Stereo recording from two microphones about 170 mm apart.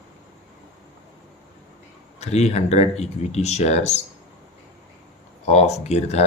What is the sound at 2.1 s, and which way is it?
Speech, 40° left (ahead or behind).